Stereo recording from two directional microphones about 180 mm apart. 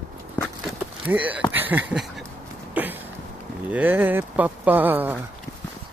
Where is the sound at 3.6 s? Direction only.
10° right (ahead or behind).